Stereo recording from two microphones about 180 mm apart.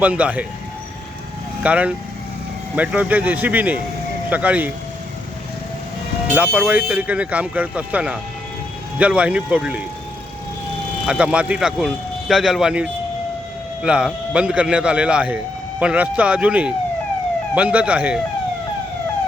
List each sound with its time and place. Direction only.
0.0 s speech: 10° right (ahead or behind)
1.6 s speech: 5° right (ahead or behind)
6.3 s speech: 10° right (ahead or behind)
11.0 s speech: 5° right (ahead or behind)